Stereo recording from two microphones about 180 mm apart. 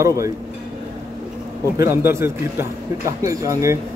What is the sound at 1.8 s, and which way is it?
Speech, 15° right (ahead or behind).